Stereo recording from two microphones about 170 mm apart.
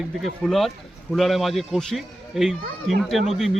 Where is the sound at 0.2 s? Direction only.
Centre (ahead or behind).